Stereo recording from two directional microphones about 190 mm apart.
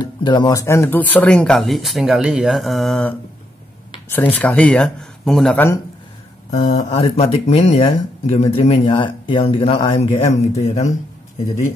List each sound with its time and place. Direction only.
0.2 s speech: 20° left (ahead or behind); by 5.7 s 5° left (ahead or behind)
6.5 s speech: 40° left (ahead or behind)
7.0 s speech: 30° left (ahead or behind)